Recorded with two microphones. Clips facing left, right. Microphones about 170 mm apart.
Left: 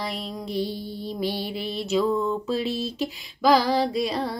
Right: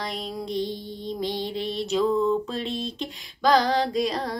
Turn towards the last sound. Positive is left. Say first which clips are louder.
# even
turn(degrees=5)  # may be behind; listen again after turning